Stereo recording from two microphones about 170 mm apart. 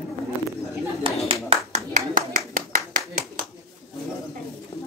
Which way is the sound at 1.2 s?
40° right (ahead or behind).